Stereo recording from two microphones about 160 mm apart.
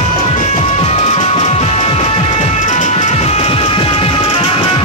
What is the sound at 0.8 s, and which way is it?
Music, 40° left (ahead or behind).